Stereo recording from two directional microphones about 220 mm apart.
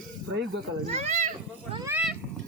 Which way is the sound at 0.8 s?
30° right (ahead or behind).